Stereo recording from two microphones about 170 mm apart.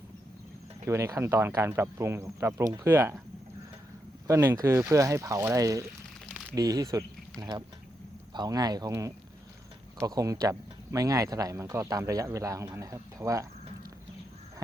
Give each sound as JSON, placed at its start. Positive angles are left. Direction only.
{"t": 0.9, "sound": "speech", "side_deg": -15}
{"t": 4.3, "sound": "speech", "side_deg": -15}